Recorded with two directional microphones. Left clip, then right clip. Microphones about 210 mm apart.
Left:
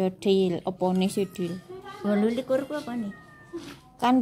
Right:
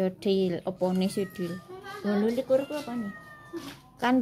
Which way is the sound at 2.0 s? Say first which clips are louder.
Left 1 dB; 35° left (ahead or behind).